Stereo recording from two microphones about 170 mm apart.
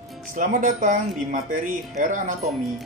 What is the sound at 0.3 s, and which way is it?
Speech, 50° right (ahead or behind).